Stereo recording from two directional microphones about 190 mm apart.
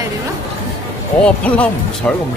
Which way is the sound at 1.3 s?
5° left (ahead or behind).